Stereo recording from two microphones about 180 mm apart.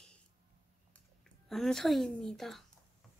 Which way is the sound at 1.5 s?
Centre (ahead or behind).